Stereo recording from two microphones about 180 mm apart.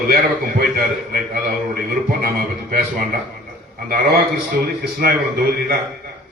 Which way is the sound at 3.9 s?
55° right (ahead or behind).